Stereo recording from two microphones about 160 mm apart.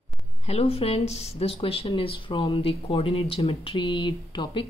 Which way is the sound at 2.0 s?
35° left (ahead or behind).